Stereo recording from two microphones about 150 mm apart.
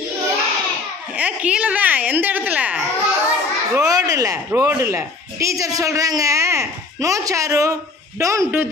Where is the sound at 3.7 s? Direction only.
20° right (ahead or behind).